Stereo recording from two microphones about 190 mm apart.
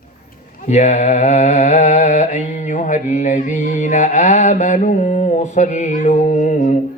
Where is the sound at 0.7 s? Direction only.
40° left (ahead or behind).